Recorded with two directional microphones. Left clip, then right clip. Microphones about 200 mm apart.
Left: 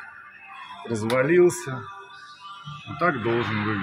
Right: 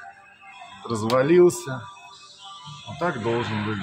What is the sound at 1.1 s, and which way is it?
Speech, 20° right (ahead or behind).